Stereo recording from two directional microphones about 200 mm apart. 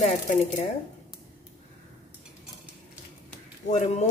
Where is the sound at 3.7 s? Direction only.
35° left (ahead or behind).